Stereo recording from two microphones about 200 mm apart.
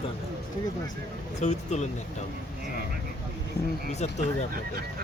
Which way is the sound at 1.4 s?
35° left (ahead or behind).